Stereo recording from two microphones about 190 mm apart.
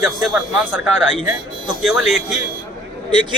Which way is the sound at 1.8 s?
Centre (ahead or behind).